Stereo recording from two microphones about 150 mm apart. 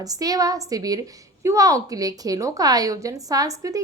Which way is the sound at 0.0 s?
25° right (ahead or behind).